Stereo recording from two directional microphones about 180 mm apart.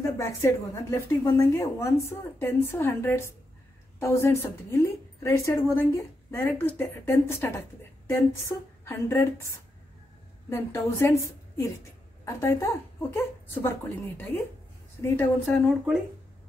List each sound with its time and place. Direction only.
0.0 s speech: 15° left (ahead or behind)
10.5 s speech: 15° left (ahead or behind)